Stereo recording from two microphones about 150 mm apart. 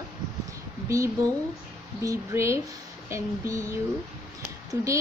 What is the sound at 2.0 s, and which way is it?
Speech, 20° right (ahead or behind).